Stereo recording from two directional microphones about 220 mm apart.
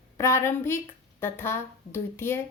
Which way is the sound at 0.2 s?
10° left (ahead or behind).